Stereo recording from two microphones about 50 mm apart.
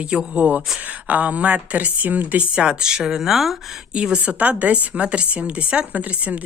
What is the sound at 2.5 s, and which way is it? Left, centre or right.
Speech, centre.